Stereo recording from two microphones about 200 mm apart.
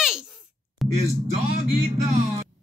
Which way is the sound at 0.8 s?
Centre (ahead or behind).